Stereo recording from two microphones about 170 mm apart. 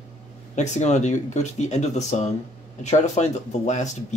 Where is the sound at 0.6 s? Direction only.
45° left (ahead or behind).